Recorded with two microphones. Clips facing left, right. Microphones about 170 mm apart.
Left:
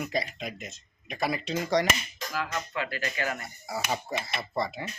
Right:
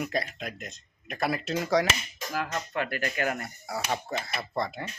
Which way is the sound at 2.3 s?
50° right (ahead or behind).